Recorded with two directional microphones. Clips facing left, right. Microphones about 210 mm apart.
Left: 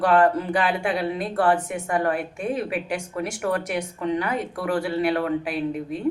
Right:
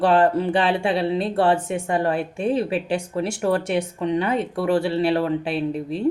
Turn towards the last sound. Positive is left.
turn(degrees=-30)  # may be behind; listen again after turning